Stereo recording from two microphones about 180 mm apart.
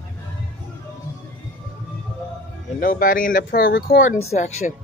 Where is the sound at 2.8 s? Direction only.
50° left (ahead or behind).